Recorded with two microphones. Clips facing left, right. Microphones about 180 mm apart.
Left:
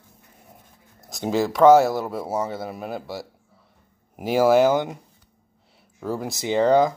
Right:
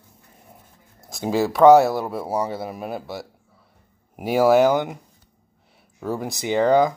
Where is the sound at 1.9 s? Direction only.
Centre (ahead or behind).